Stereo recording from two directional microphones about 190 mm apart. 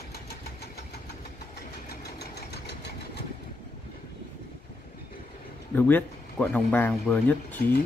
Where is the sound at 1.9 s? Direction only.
60° left (ahead or behind).